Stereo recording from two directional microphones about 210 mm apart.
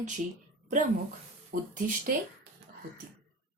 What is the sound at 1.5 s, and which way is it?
Speech, 45° right (ahead or behind).